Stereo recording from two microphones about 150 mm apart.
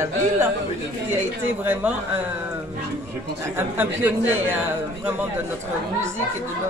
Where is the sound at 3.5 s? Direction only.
15° right (ahead or behind).